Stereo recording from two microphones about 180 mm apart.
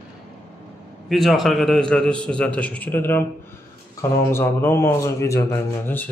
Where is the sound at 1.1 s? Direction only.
Centre (ahead or behind).